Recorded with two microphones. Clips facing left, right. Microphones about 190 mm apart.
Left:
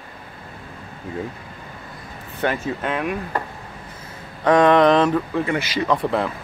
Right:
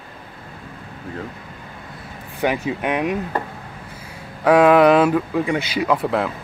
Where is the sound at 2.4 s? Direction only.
10° right (ahead or behind).